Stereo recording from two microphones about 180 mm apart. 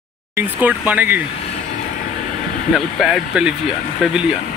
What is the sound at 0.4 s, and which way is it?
Speech, 10° right (ahead or behind).